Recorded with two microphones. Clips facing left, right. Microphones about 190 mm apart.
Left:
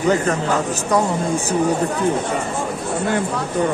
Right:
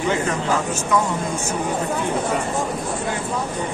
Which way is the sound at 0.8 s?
35° left (ahead or behind).